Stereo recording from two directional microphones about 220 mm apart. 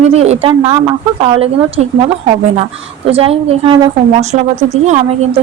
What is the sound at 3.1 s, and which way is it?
Speech, 25° right (ahead or behind).